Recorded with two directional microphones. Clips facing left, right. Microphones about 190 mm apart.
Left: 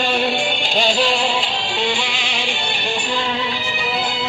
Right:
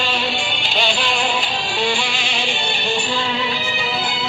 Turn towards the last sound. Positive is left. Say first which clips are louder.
# right 1 dB
turn(degrees=15)  # may be behind; listen again after turning